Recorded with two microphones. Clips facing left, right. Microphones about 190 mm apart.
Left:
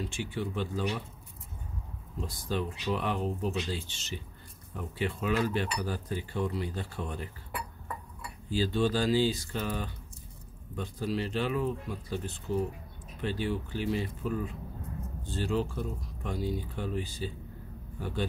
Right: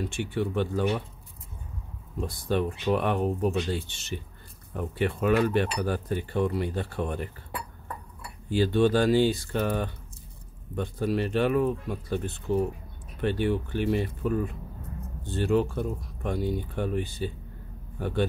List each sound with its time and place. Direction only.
0.0 s cutlery: 60° right (ahead or behind)
2.1 s cutlery: 60° right (ahead or behind)
8.5 s cutlery: 60° right (ahead or behind)
17.9 s speech: 60° right (ahead or behind)